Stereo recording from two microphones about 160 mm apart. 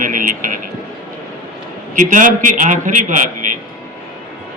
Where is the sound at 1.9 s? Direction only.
55° right (ahead or behind).